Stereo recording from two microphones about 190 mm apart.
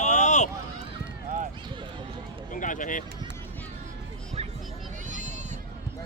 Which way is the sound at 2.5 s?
45° left (ahead or behind).